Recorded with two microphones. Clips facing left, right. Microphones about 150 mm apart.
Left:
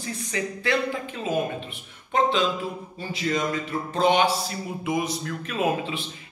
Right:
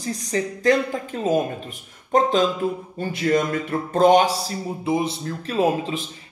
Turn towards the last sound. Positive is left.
turn(degrees=-35)  # may be behind; listen again after turning